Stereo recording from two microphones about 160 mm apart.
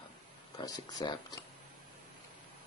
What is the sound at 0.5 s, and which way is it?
Speech, 25° left (ahead or behind).